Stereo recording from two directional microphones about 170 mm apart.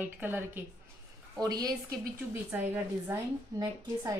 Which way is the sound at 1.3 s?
20° right (ahead or behind).